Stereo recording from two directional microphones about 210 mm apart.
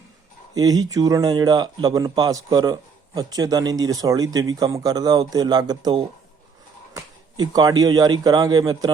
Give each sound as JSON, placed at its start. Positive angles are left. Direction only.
{"t": 0.5, "sound": "speech", "side_deg": -20}